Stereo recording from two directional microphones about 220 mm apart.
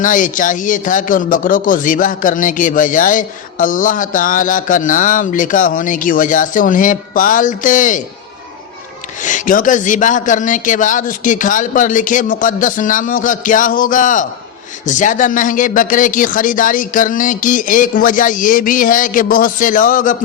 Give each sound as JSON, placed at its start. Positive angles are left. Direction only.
{"t": 0.0, "sound": "speech", "side_deg": 35}
{"t": 9.2, "sound": "speech", "side_deg": 35}